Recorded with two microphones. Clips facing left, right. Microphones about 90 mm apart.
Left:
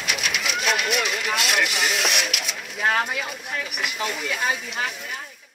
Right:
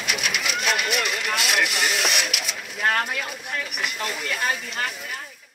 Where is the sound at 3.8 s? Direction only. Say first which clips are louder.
Left 3 dB; centre (ahead or behind).